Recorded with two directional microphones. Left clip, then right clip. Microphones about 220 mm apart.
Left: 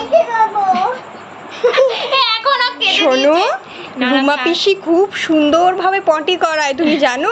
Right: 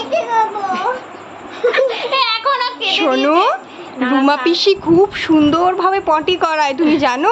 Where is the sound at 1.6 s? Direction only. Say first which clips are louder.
Left 2 dB; 5° right (ahead or behind).